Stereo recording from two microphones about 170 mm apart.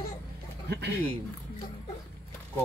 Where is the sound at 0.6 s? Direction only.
80° right.